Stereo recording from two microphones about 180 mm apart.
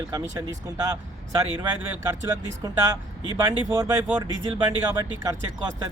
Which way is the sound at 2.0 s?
15° right (ahead or behind).